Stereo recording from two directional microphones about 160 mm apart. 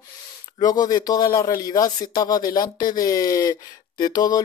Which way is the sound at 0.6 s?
25° left (ahead or behind).